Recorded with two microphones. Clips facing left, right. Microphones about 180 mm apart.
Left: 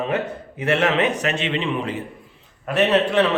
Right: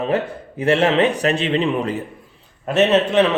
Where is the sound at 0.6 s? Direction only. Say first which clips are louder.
Right 4 dB; 30° right (ahead or behind).